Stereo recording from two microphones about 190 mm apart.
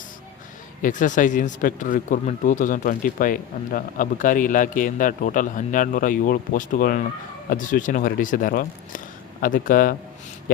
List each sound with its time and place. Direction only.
0.8 s speech: 40° left (ahead or behind)